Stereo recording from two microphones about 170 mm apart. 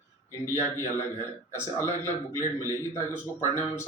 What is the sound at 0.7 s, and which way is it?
Speech, 15° left (ahead or behind).